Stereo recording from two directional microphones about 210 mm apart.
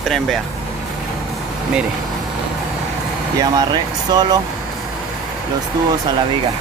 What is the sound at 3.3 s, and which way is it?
Speech, 20° right (ahead or behind).